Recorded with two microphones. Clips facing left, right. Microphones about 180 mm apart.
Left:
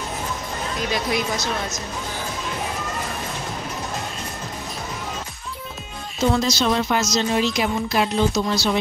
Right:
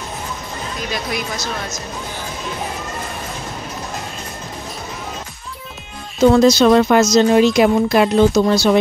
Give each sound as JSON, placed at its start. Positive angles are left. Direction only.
{"t": 6.3, "sound": "speech", "side_deg": -60}